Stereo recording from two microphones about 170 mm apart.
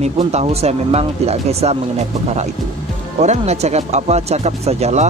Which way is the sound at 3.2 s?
40° right (ahead or behind).